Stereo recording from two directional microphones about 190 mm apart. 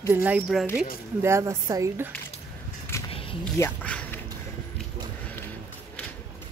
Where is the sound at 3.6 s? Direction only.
5° left (ahead or behind).